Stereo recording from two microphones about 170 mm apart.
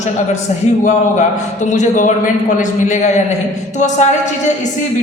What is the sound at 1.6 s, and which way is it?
A woman's voice, 45° left (ahead or behind).